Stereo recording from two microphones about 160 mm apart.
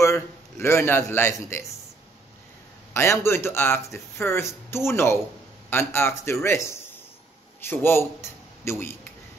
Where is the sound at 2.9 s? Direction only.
15° left (ahead or behind).